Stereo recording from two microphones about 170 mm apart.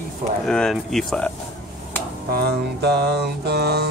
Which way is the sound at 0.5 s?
5° left (ahead or behind).